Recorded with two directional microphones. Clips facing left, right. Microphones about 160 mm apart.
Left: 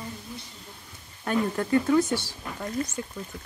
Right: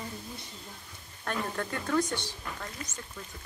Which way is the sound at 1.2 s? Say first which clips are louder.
Left 8 dB; 5° left (ahead or behind).